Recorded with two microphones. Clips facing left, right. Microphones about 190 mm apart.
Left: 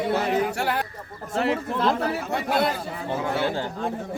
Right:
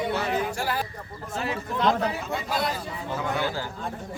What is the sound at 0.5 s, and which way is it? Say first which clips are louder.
Speech: left 3 dB; 65° left (ahead or behind).